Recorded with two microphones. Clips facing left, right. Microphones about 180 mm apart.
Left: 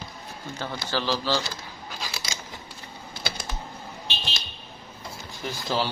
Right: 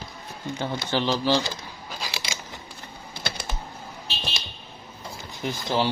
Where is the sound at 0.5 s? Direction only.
20° right (ahead or behind).